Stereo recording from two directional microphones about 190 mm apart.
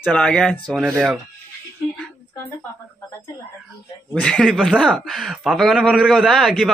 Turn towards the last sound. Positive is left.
turn(degrees=0)  # may be behind; listen again after turning